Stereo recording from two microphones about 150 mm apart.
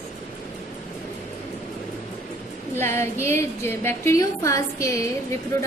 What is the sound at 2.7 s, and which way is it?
A woman's voice, 15° left (ahead or behind).